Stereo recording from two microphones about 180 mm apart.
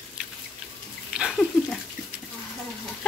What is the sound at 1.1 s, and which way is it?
Bathtub, 5° right (ahead or behind).